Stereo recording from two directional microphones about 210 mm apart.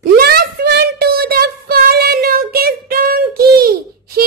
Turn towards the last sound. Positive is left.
turn(degrees=-45)  # may be behind; listen again after turning